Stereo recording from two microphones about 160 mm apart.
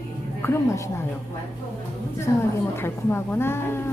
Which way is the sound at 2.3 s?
20° left (ahead or behind).